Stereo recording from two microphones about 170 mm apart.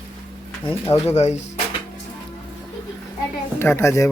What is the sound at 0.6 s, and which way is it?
Speech, 15° left (ahead or behind).